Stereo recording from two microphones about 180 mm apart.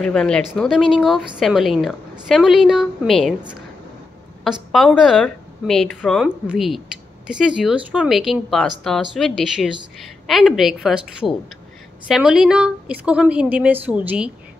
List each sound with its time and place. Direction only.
0.0 s speech: 5° left (ahead or behind)